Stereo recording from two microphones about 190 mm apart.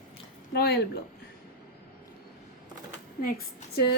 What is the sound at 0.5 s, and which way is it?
Speech, 55° left (ahead or behind).